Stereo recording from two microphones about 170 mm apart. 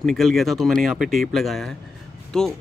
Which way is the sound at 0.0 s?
Centre (ahead or behind).